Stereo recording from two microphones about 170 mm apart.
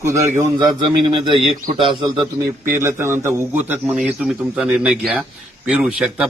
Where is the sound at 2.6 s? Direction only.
15° right (ahead or behind).